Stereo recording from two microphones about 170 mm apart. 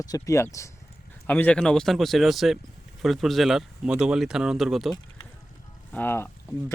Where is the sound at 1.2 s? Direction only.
10° left (ahead or behind).